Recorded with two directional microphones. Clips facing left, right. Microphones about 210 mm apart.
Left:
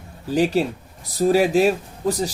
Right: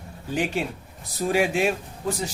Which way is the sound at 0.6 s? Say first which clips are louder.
Left 7 dB; 35° left (ahead or behind).